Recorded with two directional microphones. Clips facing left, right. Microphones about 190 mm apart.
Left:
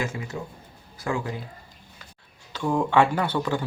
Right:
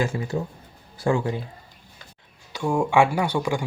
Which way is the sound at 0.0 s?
35° right (ahead or behind).